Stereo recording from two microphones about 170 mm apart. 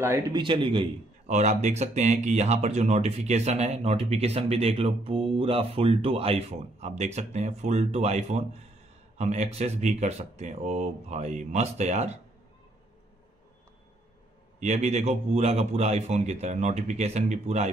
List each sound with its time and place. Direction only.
0.3 s speech: 30° right (ahead or behind)
1.3 s speech: 45° right (ahead or behind)
14.6 s speech: 40° right (ahead or behind)